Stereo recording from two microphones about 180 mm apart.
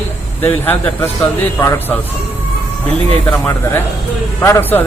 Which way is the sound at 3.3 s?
10° left (ahead or behind).